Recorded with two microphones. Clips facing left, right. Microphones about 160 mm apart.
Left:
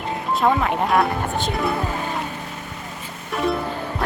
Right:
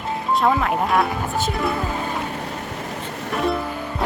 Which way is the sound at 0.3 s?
Centre (ahead or behind).